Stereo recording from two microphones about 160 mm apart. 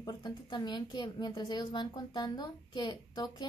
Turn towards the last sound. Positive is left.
turn(degrees=25)  # may be behind; listen again after turning